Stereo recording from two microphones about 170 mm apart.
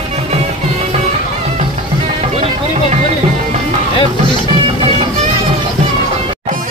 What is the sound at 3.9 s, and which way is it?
Music, 30° left (ahead or behind).